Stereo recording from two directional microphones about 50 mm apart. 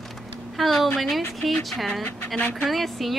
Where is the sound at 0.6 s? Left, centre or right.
Centre.